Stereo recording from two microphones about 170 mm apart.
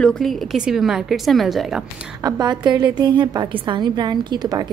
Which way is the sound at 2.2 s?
25° right (ahead or behind).